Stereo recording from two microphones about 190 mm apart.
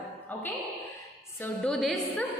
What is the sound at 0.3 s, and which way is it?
Music, 10° left (ahead or behind).